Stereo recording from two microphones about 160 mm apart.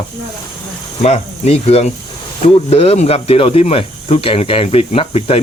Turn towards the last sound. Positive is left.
turn(degrees=40)  # may be behind; listen again after turning